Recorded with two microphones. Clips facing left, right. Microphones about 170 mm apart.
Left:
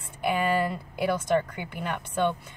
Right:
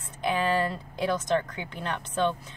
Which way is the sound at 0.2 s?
10° left (ahead or behind).